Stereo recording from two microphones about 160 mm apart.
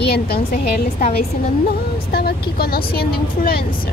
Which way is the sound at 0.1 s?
70° left (ahead or behind).